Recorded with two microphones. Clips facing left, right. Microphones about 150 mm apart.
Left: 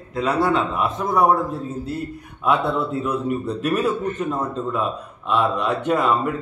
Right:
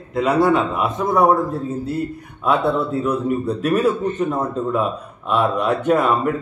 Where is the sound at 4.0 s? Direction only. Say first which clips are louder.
Right 3 dB; 25° right (ahead or behind).